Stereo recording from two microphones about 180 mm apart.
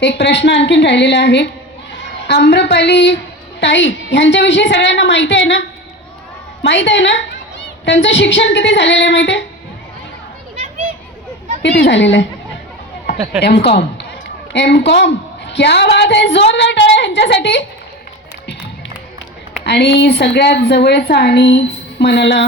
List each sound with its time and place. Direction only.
0.0 s a woman's voice: 70° left (ahead or behind)
11.6 s a woman's voice: 75° left (ahead or behind)
13.4 s a woman's voice: 65° left (ahead or behind)
19.6 s a woman's voice: 65° left (ahead or behind)